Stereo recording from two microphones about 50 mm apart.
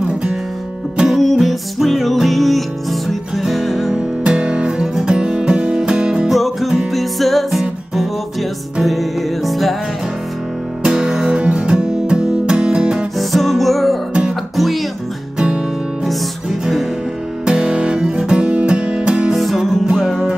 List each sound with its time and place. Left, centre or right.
1.1 s music: centre
3.9 s music: centre
6.3 s music: centre
10.8 s guitar: centre
11.4 s music: centre
13.2 s music: centre
15.3 s music: right
17.5 s music: centre
19.3 s music: centre
19.9 s music: centre